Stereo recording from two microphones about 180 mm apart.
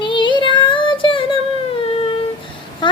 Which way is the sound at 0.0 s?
25° left (ahead or behind).